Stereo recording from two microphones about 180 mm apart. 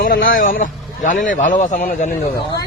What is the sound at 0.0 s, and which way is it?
A man's voice, 50° left (ahead or behind).